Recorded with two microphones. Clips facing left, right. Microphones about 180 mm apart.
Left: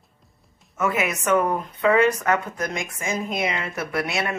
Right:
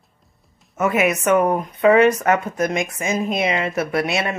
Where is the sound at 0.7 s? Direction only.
20° right (ahead or behind).